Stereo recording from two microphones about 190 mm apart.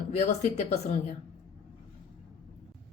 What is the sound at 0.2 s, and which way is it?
Speech, 35° left (ahead or behind).